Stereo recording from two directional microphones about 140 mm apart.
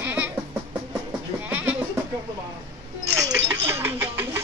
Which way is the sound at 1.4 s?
15° right (ahead or behind).